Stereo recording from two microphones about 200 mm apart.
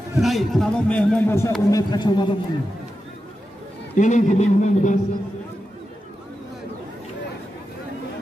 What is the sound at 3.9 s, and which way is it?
A man's voice, 40° left (ahead or behind).